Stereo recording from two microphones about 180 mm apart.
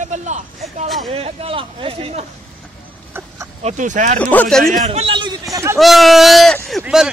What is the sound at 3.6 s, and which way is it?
Speech, 45° right (ahead or behind).